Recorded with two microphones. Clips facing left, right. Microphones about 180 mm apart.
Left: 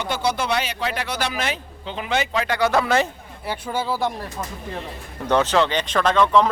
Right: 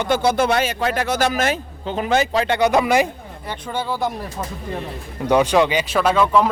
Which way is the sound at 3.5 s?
5° left (ahead or behind).